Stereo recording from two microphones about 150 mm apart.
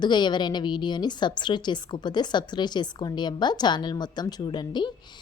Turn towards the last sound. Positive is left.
turn(degrees=30)  # may be behind; listen again after turning